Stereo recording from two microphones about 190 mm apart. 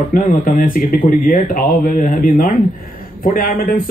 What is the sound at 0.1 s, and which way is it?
Speech, 50° left (ahead or behind).